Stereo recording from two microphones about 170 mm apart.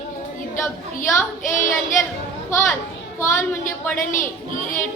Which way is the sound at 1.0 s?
15° left (ahead or behind).